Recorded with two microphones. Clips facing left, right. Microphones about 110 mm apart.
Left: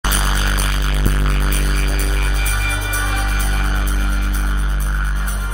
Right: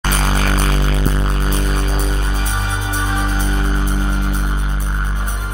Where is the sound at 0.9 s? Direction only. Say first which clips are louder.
Right 2 dB; 25° right (ahead or behind).